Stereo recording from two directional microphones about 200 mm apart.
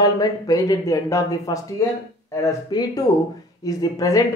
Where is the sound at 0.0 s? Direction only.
20° left (ahead or behind).